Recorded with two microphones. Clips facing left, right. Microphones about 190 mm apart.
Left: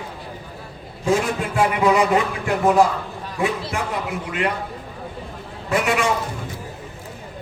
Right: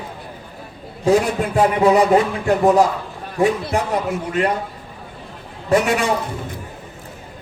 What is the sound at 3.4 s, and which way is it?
Speech, 40° right (ahead or behind).